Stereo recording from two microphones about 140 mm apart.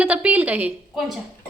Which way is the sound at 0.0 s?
10° right (ahead or behind).